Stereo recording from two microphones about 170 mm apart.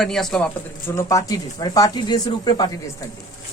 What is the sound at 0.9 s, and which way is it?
Speech, 20° left (ahead or behind).